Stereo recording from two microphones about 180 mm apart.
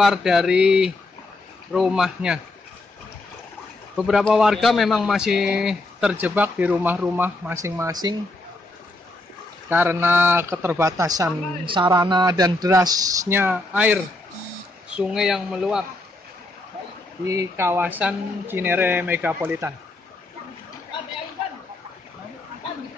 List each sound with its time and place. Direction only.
0.0 s a man's voice: 5° right (ahead or behind)
3.9 s a man's voice: centre (ahead or behind); by 8.2 s 20° right (ahead or behind)
9.7 s a man's voice: 10° right (ahead or behind)
17.3 s speech: 15° right (ahead or behind)